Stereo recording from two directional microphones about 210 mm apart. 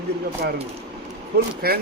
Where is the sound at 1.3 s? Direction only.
45° right (ahead or behind).